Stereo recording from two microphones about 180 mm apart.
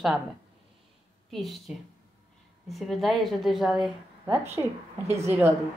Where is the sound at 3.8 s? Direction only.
10° right (ahead or behind).